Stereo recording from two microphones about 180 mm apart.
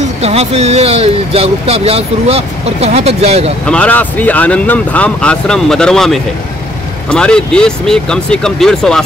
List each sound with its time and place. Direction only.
0.0 s speech: 35° right (ahead or behind)
3.6 s speech: 5° left (ahead or behind)